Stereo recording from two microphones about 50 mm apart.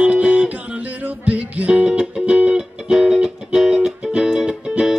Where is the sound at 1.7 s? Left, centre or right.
Centre.